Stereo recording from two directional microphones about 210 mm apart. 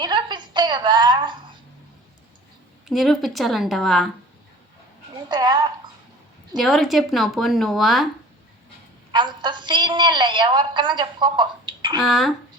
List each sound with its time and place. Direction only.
0.0 s a sound: 20° right (ahead or behind)
2.9 s speech: centre (ahead or behind)
5.3 s speech: 20° right (ahead or behind)
6.6 s speech: centre (ahead or behind)
9.1 s a woman's voice: 20° right (ahead or behind)
12.0 s speech: centre (ahead or behind)